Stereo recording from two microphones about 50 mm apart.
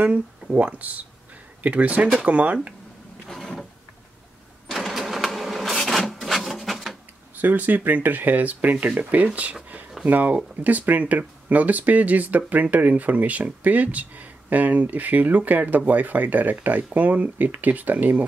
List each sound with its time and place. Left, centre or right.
0.6 s speech: right
3.3 s printer: centre
4.6 s vehicle: centre
5.9 s wood: centre
7.3 s speech: right